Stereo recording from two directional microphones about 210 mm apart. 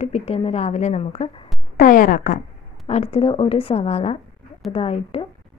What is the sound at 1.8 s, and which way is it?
Speech, 40° left (ahead or behind).